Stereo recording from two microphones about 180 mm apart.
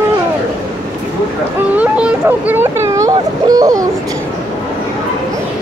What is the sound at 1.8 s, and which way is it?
A child's voice, 5° right (ahead or behind).